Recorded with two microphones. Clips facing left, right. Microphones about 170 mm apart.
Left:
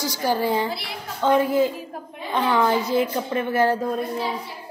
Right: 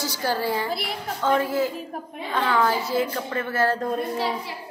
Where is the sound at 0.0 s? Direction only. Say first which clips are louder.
Left 3 dB; 15° left (ahead or behind).